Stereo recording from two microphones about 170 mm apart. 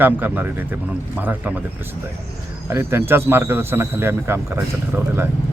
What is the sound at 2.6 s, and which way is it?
Speech, 15° right (ahead or behind).